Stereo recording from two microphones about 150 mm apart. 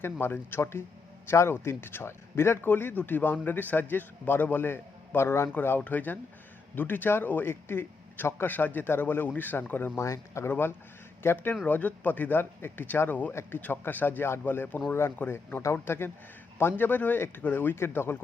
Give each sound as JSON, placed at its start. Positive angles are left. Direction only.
{"t": 0.0, "sound": "speech", "side_deg": 15}